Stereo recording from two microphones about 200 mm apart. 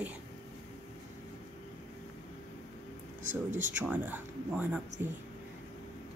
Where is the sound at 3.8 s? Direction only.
10° right (ahead or behind).